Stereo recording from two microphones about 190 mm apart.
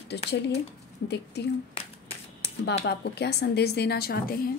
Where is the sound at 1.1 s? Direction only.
60° left (ahead or behind).